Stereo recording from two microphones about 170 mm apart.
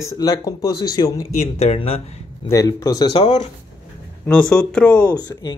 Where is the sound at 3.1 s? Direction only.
35° left (ahead or behind).